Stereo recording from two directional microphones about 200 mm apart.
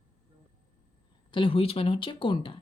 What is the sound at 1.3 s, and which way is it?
Speech, 25° left (ahead or behind).